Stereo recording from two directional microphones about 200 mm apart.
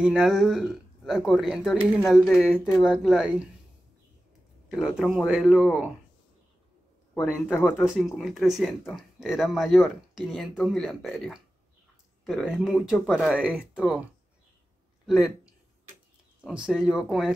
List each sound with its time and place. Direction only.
0.0 s speech: 5° right (ahead or behind)
4.6 s speech: centre (ahead or behind)
7.2 s speech: 5° right (ahead or behind)
7.4 s speech: 10° left (ahead or behind)
8.2 s speech: centre (ahead or behind)
15.0 s speech: 5° right (ahead or behind)